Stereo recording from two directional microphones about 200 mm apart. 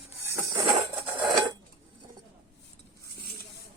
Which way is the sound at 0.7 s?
25° right (ahead or behind).